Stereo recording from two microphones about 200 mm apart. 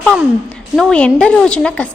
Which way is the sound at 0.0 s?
Centre (ahead or behind).